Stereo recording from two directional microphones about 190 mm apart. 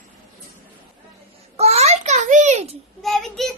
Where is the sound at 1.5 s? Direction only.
35° right (ahead or behind).